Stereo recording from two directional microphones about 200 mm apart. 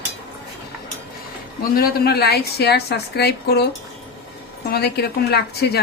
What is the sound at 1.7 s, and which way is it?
A woman's voice, 50° left (ahead or behind).